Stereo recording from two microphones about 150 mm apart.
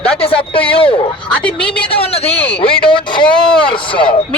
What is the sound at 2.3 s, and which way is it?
Speech, 10° left (ahead or behind).